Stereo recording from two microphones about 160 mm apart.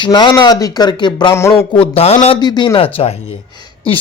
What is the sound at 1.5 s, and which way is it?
Speech, 35° left (ahead or behind).